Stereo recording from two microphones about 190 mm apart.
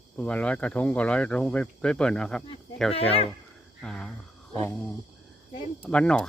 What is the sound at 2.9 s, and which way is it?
Speech, 30° left (ahead or behind).